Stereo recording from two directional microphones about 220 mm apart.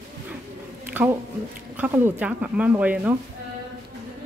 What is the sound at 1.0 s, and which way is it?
A woman's voice, 10° right (ahead or behind).